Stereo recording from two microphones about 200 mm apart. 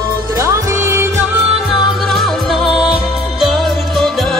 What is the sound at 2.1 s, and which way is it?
Music, centre (ahead or behind).